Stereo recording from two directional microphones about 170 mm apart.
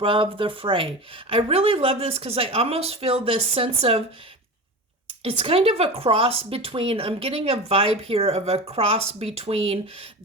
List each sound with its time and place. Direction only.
0.0 s speech: 30° right (ahead or behind)
5.2 s speech: 35° right (ahead or behind)